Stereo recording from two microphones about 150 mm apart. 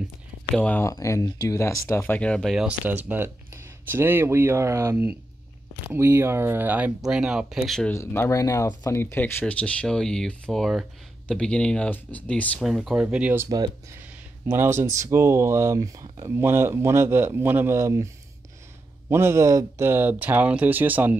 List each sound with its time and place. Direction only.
0.6 s speech: 10° left (ahead or behind)
0.8 s speech: 20° left (ahead or behind); by 7.9 s centre (ahead or behind)
7.9 s speech: 15° left (ahead or behind)
12.6 s speech: centre (ahead or behind)
13.5 s speech: 25° right (ahead or behind)
13.9 s speech: 15° right (ahead or behind)